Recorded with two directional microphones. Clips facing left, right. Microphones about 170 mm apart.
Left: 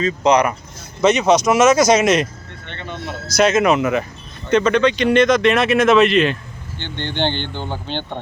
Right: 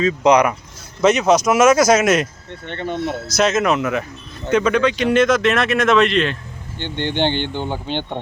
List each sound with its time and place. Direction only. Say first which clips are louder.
0.0 s speech: right 1 dB; 10° right (ahead or behind)
2.6 s speech: right 7 dB; 50° right (ahead or behind)
3.3 s speech: left 3 dB; centre (ahead or behind)
6.7 s speech: right 3 dB; 15° right (ahead or behind)